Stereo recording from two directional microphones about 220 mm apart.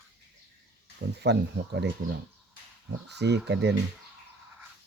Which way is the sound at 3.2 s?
50° right (ahead or behind).